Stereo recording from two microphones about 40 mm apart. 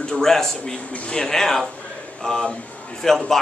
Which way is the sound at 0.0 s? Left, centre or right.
Centre.